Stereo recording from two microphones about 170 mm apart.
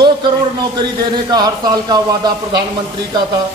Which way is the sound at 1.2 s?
25° right (ahead or behind).